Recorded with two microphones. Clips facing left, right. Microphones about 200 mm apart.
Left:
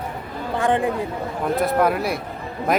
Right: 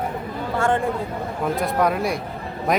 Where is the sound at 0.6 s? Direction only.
15° left (ahead or behind).